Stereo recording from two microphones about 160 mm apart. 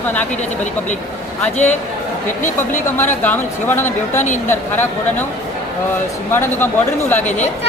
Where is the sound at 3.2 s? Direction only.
10° left (ahead or behind).